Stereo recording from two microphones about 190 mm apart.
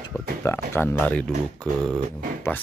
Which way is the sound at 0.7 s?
10° left (ahead or behind).